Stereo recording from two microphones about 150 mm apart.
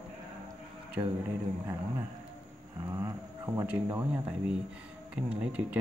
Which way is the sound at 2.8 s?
20° right (ahead or behind).